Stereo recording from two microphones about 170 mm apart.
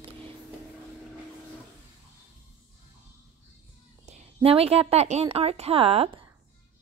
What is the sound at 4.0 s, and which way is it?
A woman's voice, 40° right (ahead or behind).